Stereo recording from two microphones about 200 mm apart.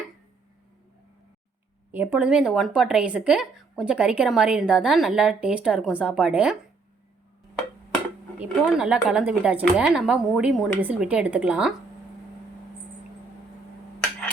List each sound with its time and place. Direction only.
1.9 s speech: 10° right (ahead or behind)
8.4 s speech: 5° right (ahead or behind)